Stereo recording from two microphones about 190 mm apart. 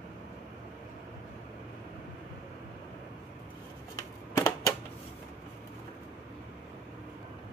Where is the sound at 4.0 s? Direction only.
15° left (ahead or behind).